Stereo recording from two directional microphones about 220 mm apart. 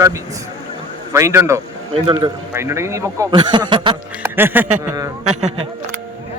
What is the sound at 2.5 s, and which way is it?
Speech, 10° right (ahead or behind).